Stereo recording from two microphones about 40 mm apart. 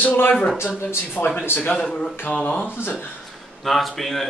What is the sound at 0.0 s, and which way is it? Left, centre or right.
Speech, left.